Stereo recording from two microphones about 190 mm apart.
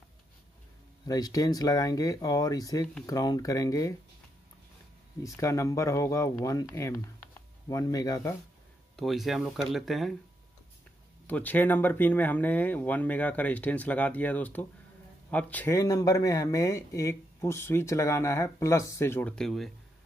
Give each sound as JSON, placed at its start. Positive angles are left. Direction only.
{"t": 1.0, "sound": "speech", "side_deg": 20}
{"t": 5.2, "sound": "speech", "side_deg": 15}
{"t": 8.9, "sound": "speech", "side_deg": 0}
{"t": 11.2, "sound": "speech", "side_deg": 10}